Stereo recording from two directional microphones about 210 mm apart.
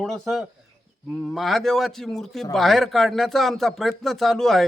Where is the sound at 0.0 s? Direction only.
Centre (ahead or behind).